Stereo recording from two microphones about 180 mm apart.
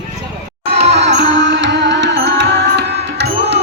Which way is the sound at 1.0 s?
75° right (ahead or behind).